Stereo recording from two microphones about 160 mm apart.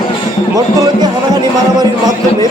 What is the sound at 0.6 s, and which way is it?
Speech, 25° right (ahead or behind).